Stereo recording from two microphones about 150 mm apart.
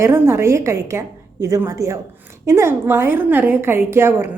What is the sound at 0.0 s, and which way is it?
A woman's voice, 20° right (ahead or behind).